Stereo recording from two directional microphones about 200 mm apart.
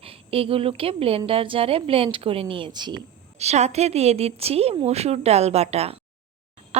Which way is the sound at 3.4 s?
35° right (ahead or behind).